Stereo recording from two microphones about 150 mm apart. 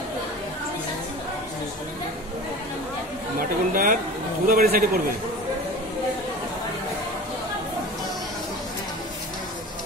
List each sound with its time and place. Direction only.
3.3 s speech: 70° right (ahead or behind)
4.5 s a man's voice: 80° right